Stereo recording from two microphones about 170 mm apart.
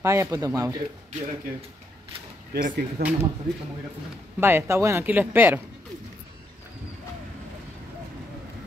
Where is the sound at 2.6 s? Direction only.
60° right (ahead or behind).